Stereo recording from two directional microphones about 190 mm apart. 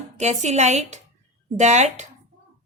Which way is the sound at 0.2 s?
35° right (ahead or behind).